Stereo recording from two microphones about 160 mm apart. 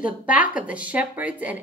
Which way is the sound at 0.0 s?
10° right (ahead or behind).